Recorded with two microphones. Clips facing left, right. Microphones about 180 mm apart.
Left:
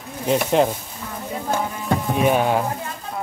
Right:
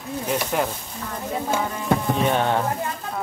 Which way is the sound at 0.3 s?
20° left (ahead or behind).